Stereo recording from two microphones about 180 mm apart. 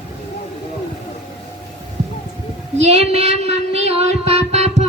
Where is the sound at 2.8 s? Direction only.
40° right (ahead or behind).